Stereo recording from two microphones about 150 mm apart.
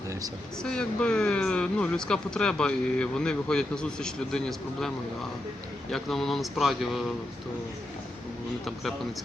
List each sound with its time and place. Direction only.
0.6 s speech: 5° left (ahead or behind)
5.9 s speech: centre (ahead or behind)